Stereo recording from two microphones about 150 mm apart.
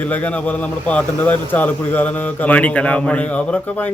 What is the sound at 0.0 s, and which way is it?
Speech, 10° left (ahead or behind).